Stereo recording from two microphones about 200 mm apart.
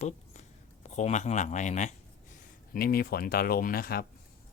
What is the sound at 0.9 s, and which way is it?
Speech, 35° left (ahead or behind).